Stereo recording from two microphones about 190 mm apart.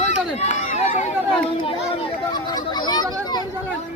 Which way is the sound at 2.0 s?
20° left (ahead or behind).